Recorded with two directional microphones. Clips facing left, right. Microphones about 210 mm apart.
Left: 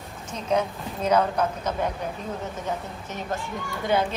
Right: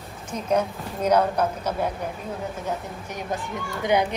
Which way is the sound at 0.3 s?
10° right (ahead or behind).